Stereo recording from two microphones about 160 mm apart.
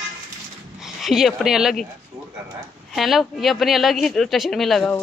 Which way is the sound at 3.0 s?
Centre (ahead or behind).